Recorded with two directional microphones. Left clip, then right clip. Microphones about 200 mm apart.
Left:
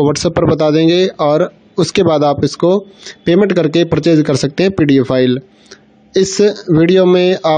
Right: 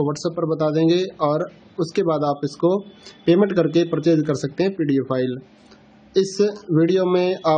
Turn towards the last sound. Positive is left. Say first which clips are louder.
# left 8 dB
turn(degrees=40)  # may be behind; listen again after turning